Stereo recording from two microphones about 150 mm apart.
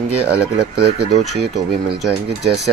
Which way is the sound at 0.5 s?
90° right.